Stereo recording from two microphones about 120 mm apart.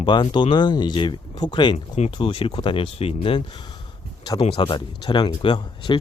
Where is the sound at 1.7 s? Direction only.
70° left (ahead or behind).